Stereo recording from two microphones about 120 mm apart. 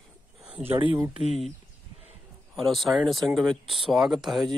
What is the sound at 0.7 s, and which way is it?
Speech, 45° right (ahead or behind).